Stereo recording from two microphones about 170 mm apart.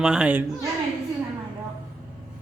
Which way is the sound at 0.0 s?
5° right (ahead or behind).